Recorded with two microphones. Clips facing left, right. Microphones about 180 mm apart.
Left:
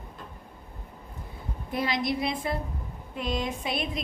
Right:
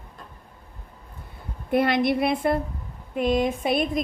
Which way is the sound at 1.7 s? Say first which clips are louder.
Right 8 dB; 60° right (ahead or behind).